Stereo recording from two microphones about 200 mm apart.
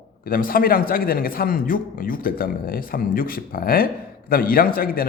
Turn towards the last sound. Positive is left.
turn(degrees=45)  # may be behind; listen again after turning